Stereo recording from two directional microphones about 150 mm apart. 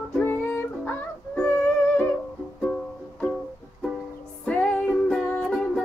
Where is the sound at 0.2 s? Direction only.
15° left (ahead or behind).